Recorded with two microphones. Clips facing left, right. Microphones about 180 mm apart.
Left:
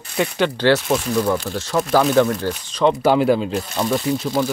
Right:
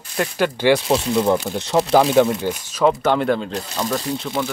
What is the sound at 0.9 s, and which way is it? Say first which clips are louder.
Speech: right 2 dB; 25° right (ahead or behind).